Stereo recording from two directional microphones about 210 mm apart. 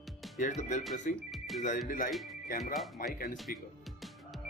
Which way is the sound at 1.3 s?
Centre (ahead or behind).